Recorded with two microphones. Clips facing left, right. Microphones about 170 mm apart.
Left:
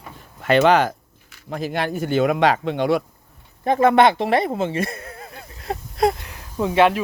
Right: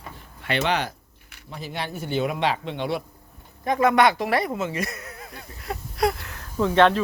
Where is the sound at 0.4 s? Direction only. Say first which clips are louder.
Left 9 dB; 45° left (ahead or behind).